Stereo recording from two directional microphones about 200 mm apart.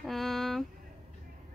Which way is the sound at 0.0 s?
Centre (ahead or behind).